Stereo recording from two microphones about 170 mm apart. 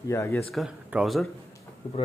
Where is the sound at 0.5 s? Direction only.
Centre (ahead or behind).